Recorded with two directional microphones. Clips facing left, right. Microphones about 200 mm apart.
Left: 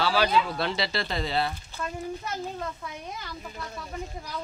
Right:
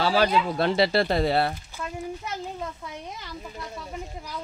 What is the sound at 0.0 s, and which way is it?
Speech, 50° right (ahead or behind).